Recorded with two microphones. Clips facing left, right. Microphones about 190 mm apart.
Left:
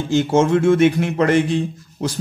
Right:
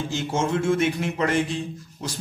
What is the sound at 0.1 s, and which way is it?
Speech, 70° left (ahead or behind).